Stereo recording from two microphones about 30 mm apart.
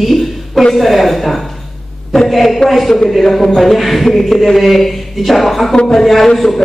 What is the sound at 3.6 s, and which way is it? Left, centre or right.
A man's voice, centre.